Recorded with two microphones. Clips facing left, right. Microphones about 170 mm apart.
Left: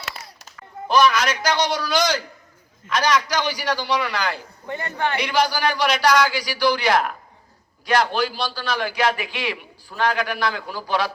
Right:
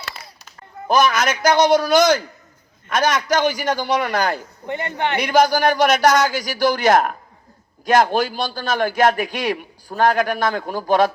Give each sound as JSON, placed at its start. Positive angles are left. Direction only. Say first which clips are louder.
{"t": 0.9, "sound": "a man's voice", "louder": "right 1 dB", "side_deg": -45}
{"t": 4.6, "sound": "a man's voice", "louder": "right 2 dB", "side_deg": -20}
{"t": 5.1, "sound": "a man's voice", "louder": "right 7 dB", "side_deg": -45}